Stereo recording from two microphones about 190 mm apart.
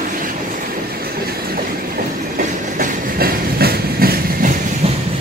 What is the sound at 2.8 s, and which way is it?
Train, 50° right (ahead or behind).